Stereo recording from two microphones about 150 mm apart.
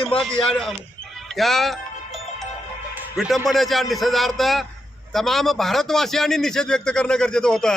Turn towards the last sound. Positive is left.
turn(degrees=5)  # may be behind; listen again after turning